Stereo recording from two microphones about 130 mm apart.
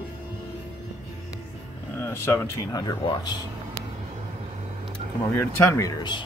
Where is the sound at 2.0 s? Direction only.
20° left (ahead or behind).